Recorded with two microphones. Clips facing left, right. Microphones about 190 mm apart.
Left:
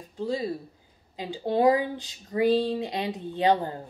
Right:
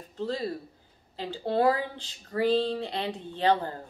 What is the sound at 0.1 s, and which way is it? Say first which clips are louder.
Speech: left 2 dB; 10° left (ahead or behind).